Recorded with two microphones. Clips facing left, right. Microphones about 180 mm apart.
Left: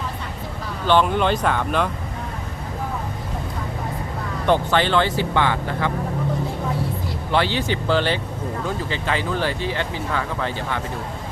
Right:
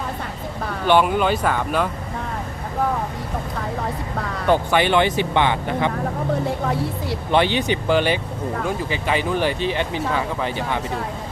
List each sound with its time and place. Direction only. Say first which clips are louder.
0.9 s speech: right 1 dB; 10° right (ahead or behind)
4.4 s speech: right 1 dB; 10° right (ahead or behind)
7.3 s speech: right 3 dB; 20° right (ahead or behind)